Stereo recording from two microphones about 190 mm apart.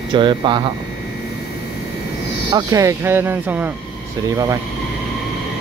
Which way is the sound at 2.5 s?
15° right (ahead or behind).